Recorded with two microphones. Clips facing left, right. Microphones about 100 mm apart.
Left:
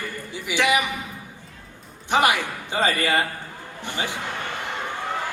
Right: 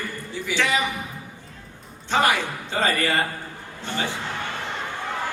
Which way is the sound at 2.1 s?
15° left (ahead or behind).